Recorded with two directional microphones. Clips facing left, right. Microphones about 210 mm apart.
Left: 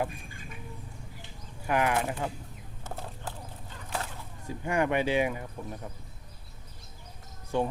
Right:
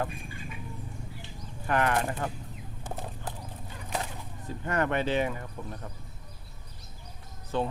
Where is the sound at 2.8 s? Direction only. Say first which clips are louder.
Right 1 dB; 15° right (ahead or behind).